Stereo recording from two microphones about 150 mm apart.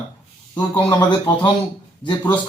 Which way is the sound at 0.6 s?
30° left (ahead or behind).